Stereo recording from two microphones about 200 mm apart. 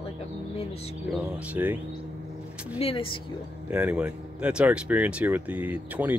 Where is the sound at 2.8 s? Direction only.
25° left (ahead or behind).